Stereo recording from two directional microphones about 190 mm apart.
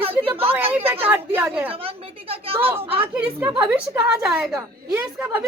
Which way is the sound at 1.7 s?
30° right (ahead or behind).